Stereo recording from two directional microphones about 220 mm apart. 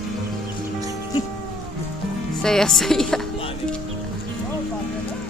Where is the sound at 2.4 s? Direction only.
5° left (ahead or behind).